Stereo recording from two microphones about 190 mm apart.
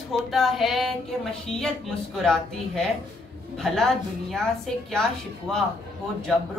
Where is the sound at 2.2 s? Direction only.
Centre (ahead or behind).